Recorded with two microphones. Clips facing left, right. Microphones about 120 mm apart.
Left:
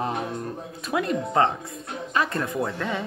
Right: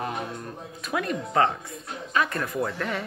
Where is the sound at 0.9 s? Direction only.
25° left (ahead or behind).